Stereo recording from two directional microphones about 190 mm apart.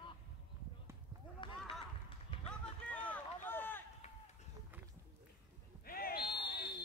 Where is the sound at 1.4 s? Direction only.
25° left (ahead or behind).